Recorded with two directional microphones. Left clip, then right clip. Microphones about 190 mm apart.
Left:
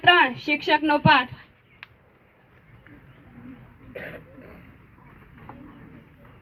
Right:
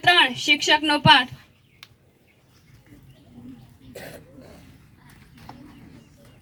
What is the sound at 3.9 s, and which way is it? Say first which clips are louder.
Cough: left 3 dB; 45° right (ahead or behind).